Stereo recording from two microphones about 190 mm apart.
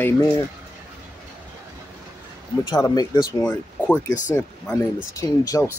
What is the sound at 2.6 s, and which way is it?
Speech, 20° left (ahead or behind).